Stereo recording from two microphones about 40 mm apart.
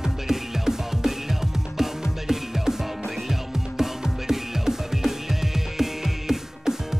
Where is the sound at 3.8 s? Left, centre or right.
Centre.